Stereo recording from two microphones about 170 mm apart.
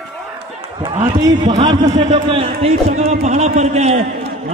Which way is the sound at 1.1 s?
25° right (ahead or behind).